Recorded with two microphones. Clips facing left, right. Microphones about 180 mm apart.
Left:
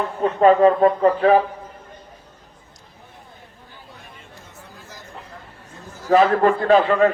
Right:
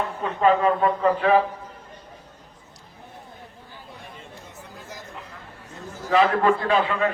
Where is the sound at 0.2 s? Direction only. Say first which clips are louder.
Left 7 dB; 40° left (ahead or behind).